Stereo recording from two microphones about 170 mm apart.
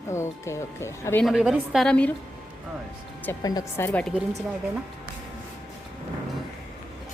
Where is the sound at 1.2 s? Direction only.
5° right (ahead or behind).